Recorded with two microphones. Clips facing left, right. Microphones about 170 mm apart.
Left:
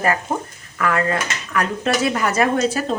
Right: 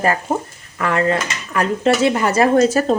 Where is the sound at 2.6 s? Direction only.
45° right (ahead or behind).